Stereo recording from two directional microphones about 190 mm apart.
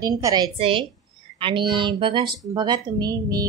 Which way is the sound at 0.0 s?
20° right (ahead or behind).